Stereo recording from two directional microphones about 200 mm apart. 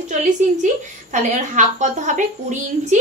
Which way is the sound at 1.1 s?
40° right (ahead or behind).